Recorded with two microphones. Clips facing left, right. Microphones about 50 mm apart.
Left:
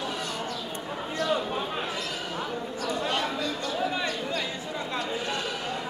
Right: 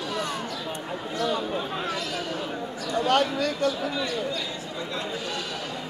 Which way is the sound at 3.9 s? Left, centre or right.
Left.